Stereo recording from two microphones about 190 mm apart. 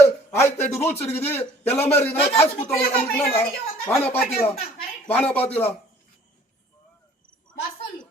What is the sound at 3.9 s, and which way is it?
A man's voice, 10° left (ahead or behind).